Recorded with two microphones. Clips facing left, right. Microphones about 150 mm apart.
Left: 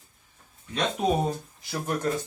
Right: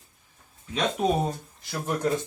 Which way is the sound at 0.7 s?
Centre (ahead or behind).